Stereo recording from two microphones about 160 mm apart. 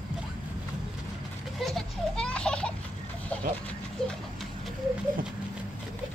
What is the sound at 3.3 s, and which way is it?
Goat, 10° left (ahead or behind).